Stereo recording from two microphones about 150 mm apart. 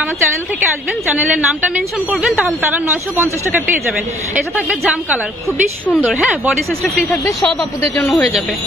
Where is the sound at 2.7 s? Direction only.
15° right (ahead or behind).